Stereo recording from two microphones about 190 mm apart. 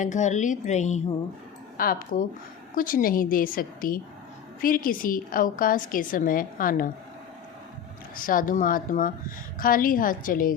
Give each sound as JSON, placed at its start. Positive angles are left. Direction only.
{"t": 0.0, "sound": "a woman's voice", "side_deg": 40}
{"t": 1.8, "sound": "a woman's voice", "side_deg": 50}
{"t": 8.1, "sound": "a woman's voice", "side_deg": 45}